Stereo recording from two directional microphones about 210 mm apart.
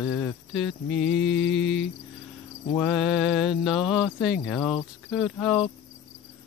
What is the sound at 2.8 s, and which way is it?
Mantra, centre (ahead or behind).